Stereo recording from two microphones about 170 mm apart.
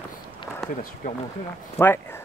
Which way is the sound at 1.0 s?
50° left (ahead or behind).